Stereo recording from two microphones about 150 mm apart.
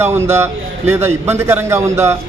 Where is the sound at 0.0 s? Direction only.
15° right (ahead or behind).